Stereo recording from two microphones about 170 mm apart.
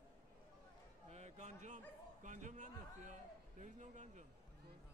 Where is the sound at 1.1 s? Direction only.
40° right (ahead or behind).